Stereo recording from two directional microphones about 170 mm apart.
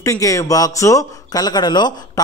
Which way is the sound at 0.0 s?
20° left (ahead or behind).